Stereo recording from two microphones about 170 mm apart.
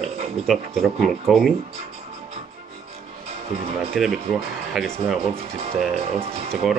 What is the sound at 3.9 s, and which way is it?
Speech, centre (ahead or behind).